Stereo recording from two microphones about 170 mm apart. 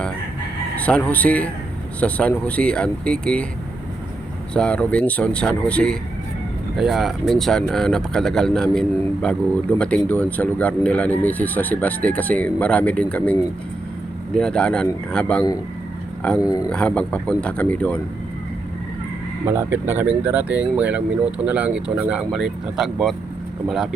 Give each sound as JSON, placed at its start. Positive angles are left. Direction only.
{"t": 0.8, "sound": "speech", "side_deg": 5}
{"t": 4.5, "sound": "speech", "side_deg": 5}
{"t": 14.3, "sound": "a man's voice", "side_deg": 5}
{"t": 19.5, "sound": "a man's voice", "side_deg": -15}